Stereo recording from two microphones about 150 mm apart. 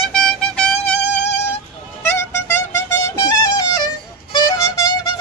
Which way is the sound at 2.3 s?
15° left (ahead or behind).